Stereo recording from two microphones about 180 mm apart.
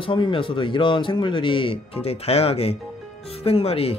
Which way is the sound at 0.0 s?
30° left (ahead or behind).